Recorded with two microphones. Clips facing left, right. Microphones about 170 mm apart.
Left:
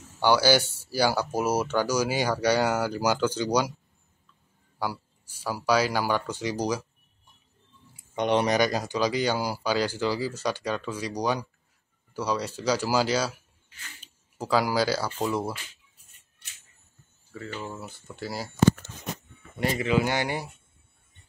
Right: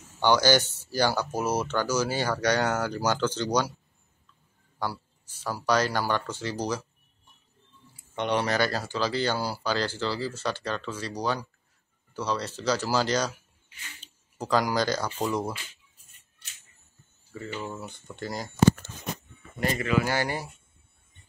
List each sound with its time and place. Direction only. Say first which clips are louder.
0.2 s speech: left 1 dB; 10° left (ahead or behind)
4.7 s speech: left 1 dB; 10° left (ahead or behind)
8.2 s speech: left 3 dB; 20° left (ahead or behind)
14.4 s speech: left 1 dB; 5° left (ahead or behind)
17.3 s speech: right 1 dB; centre (ahead or behind)
19.9 s speech: left 1 dB; 20° left (ahead or behind)